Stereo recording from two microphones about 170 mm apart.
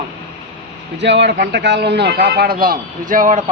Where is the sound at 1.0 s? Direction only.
90° right; by 3.4 s 50° right (ahead or behind).